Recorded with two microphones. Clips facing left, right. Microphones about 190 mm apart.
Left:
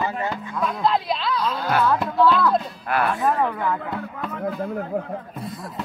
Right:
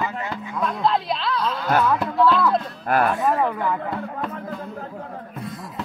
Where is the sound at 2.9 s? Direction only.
45° right (ahead or behind).